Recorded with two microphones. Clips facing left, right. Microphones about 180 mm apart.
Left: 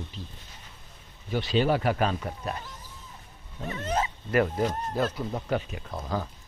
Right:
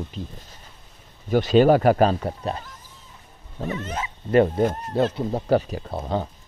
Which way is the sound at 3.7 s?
35° left (ahead or behind).